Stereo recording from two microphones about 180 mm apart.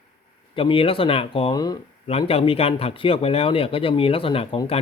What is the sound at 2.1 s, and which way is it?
Speech, 35° left (ahead or behind).